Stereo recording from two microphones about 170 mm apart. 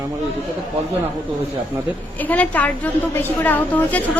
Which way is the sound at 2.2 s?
10° left (ahead or behind).